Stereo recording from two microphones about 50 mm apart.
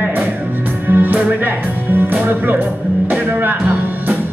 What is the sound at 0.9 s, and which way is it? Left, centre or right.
Music, right.